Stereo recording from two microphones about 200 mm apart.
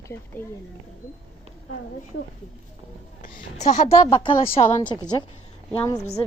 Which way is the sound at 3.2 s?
40° left (ahead or behind).